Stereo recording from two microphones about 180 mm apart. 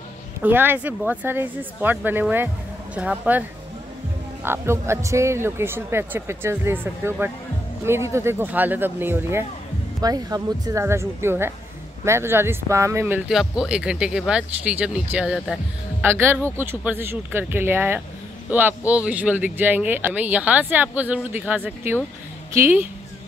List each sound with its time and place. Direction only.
0.4 s speech: 10° right (ahead or behind)
4.5 s speech: 15° right (ahead or behind)
16.0 s speech: 15° right (ahead or behind)